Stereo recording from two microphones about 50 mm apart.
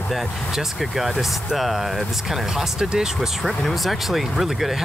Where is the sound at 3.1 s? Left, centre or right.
Centre.